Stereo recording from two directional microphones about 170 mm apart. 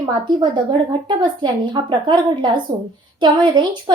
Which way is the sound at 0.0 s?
25° right (ahead or behind).